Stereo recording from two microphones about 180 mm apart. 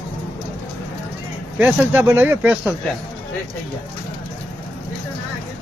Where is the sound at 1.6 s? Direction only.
10° right (ahead or behind).